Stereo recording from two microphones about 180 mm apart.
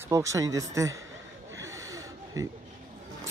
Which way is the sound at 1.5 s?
15° right (ahead or behind).